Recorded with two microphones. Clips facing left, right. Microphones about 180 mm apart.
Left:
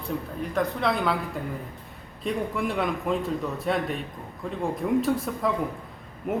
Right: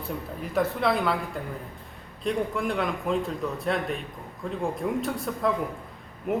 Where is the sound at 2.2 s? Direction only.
Centre (ahead or behind).